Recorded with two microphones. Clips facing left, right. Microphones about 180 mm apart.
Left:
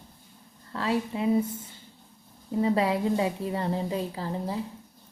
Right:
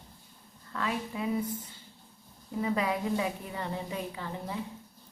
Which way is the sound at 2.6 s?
30° left (ahead or behind).